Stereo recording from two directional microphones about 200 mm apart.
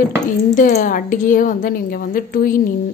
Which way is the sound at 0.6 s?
40° left (ahead or behind).